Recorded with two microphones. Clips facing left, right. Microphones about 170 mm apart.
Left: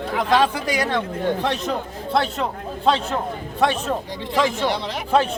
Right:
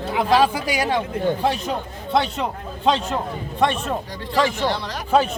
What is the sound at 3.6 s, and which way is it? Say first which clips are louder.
Speech: even; centre (ahead or behind).